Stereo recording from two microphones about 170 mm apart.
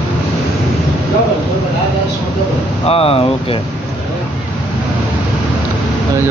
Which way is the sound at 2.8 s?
35° left (ahead or behind).